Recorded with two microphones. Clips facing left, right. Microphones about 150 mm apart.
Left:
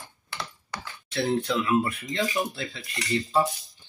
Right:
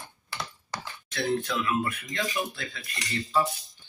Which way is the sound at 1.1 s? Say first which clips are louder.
Left 3 dB; 30° left (ahead or behind).